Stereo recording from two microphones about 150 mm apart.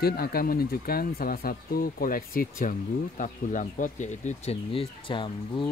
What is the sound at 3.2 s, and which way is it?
Speech, 60° left (ahead or behind).